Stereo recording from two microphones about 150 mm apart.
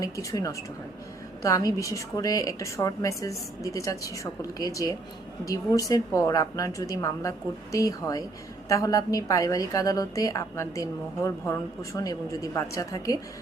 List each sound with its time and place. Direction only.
0.0 s a woman's voice: 20° left (ahead or behind)